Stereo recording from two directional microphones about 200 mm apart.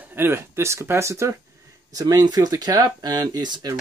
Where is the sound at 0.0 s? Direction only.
10° right (ahead or behind).